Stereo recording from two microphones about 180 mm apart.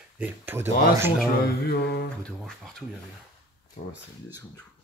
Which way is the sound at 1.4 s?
60° left (ahead or behind).